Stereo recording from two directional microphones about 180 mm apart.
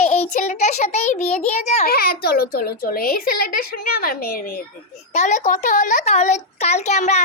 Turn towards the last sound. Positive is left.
turn(degrees=40)  # may be behind; listen again after turning